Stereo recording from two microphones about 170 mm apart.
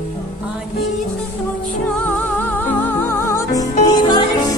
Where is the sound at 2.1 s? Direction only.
10° left (ahead or behind).